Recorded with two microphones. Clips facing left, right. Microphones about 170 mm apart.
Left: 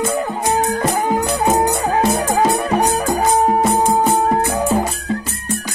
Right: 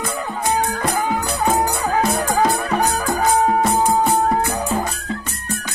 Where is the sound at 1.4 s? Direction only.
20° left (ahead or behind).